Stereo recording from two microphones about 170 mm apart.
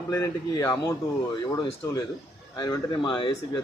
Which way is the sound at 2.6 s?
25° left (ahead or behind).